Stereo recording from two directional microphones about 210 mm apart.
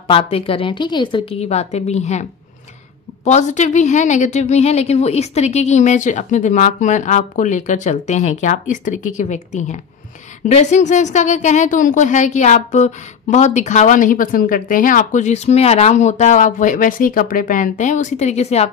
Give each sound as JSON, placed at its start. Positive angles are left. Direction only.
{"t": 0.1, "sound": "a woman's voice", "side_deg": 25}
{"t": 3.3, "sound": "a woman's voice", "side_deg": 35}